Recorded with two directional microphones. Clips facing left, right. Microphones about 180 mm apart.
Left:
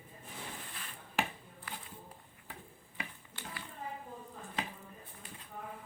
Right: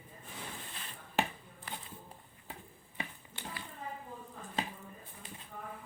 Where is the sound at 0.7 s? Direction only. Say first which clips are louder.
Right 3 dB; 25° right (ahead or behind).